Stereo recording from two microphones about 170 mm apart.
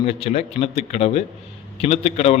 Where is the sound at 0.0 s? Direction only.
40° left (ahead or behind).